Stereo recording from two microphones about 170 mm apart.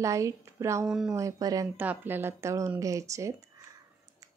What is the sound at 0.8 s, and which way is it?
Speech, 5° right (ahead or behind).